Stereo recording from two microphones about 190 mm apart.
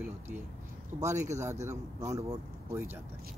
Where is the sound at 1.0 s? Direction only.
15° right (ahead or behind).